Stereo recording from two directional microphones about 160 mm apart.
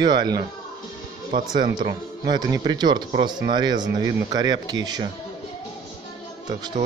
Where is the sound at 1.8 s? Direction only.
25° right (ahead or behind).